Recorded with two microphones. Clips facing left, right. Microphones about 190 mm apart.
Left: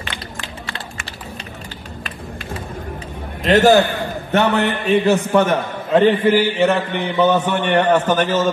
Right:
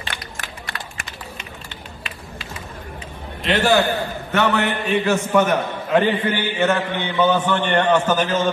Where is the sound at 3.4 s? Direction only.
40° left (ahead or behind).